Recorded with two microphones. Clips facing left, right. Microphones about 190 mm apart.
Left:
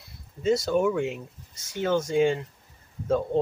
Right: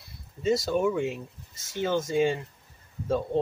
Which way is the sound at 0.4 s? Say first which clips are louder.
Left 2 dB; centre (ahead or behind).